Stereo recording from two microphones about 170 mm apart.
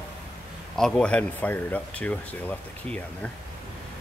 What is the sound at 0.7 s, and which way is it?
Speech, 5° left (ahead or behind).